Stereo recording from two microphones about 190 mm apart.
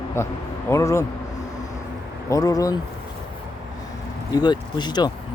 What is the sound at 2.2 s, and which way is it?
Speech, 20° left (ahead or behind).